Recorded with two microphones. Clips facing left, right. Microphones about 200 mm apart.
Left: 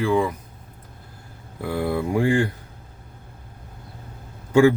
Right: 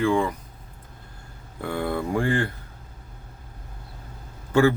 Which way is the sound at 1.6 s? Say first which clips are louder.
Left 3 dB; 5° left (ahead or behind).